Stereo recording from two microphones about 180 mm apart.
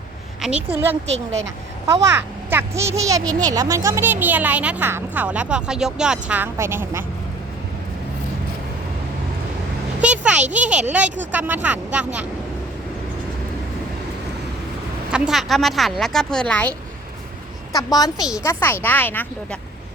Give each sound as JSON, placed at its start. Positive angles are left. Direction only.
{"t": 0.4, "sound": "a child's voice", "side_deg": -10}
{"t": 10.0, "sound": "a sound", "side_deg": -5}
{"t": 10.5, "sound": "a child's voice", "side_deg": -5}
{"t": 15.1, "sound": "speech", "side_deg": -5}
{"t": 17.7, "sound": "a woman's voice", "side_deg": 20}